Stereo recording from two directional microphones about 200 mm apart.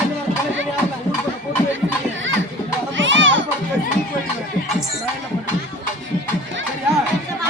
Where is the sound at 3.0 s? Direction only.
70° right (ahead or behind).